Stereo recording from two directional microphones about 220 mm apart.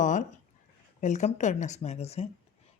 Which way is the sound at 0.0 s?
35° left (ahead or behind).